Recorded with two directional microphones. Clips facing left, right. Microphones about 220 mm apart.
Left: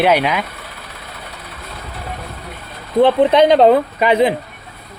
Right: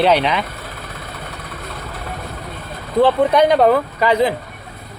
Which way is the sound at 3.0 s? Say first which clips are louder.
Left 2 dB; 25° left (ahead or behind).